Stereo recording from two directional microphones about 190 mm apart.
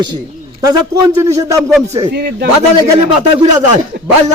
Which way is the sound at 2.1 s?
60° right (ahead or behind).